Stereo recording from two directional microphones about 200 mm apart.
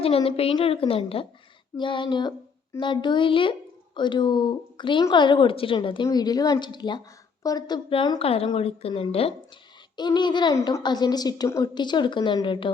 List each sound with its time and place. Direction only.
0.0 s a woman's voice: 30° left (ahead or behind)